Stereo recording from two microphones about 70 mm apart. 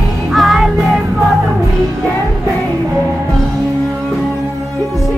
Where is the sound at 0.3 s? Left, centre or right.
Centre.